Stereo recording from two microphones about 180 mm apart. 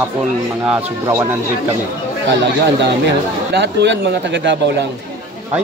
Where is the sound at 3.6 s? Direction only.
75° right (ahead or behind).